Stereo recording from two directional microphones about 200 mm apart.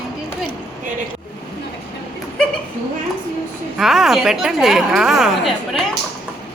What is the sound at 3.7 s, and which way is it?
A woman's voice, centre (ahead or behind).